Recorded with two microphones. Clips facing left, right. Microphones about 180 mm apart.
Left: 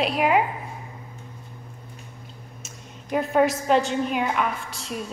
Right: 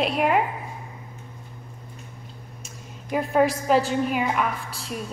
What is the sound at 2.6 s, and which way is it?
A woman's voice, centre (ahead or behind).